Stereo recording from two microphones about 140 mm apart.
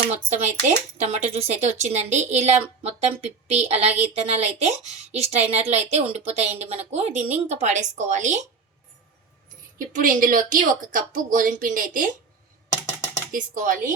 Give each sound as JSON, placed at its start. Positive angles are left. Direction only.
{"t": 0.1, "sound": "a woman's voice", "side_deg": -55}
{"t": 9.7, "sound": "speech", "side_deg": -75}
{"t": 13.3, "sound": "speech", "side_deg": -70}